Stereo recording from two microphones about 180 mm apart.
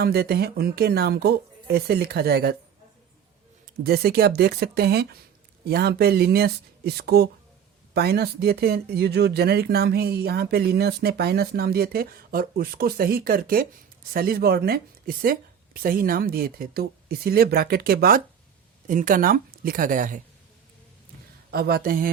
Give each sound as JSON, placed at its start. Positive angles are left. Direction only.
{"t": 0.0, "sound": "speech", "side_deg": -60}
{"t": 3.7, "sound": "a woman's voice", "side_deg": -60}
{"t": 21.5, "sound": "speech", "side_deg": -60}